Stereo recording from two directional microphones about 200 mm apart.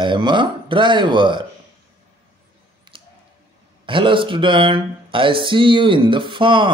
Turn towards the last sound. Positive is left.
turn(degrees=-25)  # may be behind; listen again after turning